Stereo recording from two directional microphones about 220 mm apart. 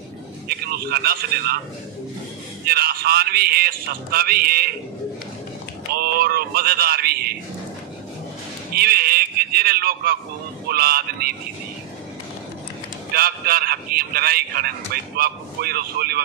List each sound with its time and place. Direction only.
0.5 s a man's voice: 45° right (ahead or behind)
2.6 s a man's voice: 45° right (ahead or behind)
5.9 s speech: 45° right (ahead or behind)
8.7 s a sound: 45° right (ahead or behind)
10.7 s a man's voice: 45° right (ahead or behind)
13.1 s a man's voice: 45° right (ahead or behind)